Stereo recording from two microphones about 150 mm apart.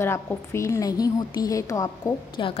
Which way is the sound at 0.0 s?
15° left (ahead or behind).